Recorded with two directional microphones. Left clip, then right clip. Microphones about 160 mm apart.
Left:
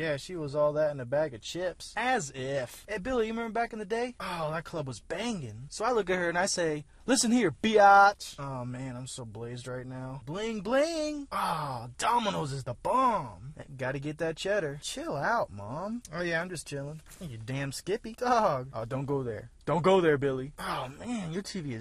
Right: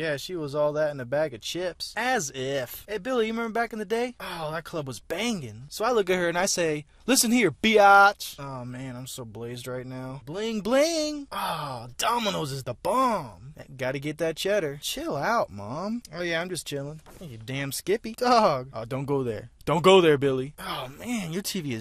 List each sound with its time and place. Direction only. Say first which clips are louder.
0.0 s speech: right 3 dB; 25° right (ahead or behind)
9.4 s speech: right 5 dB; 30° right (ahead or behind)
20.6 s speech: right 1 dB; 15° right (ahead or behind)
21.0 s speech: right 5 dB; 25° right (ahead or behind)